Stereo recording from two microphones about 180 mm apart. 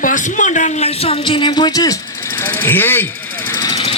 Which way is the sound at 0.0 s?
45° left (ahead or behind).